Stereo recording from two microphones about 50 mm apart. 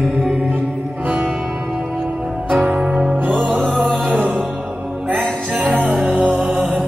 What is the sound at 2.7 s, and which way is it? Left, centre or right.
Music, centre.